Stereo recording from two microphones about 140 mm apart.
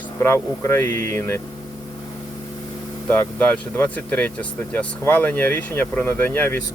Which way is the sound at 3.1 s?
10° left (ahead or behind).